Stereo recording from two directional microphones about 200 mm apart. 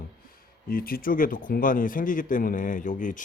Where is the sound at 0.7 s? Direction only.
45° left (ahead or behind).